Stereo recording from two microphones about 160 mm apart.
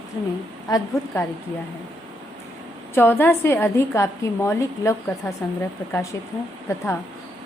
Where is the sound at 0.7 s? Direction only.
25° left (ahead or behind).